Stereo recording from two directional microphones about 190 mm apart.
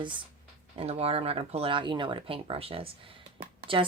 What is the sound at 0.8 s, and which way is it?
Speech, 30° right (ahead or behind).